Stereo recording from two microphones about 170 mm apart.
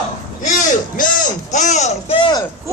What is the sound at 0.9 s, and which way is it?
A man's voice, 50° left (ahead or behind).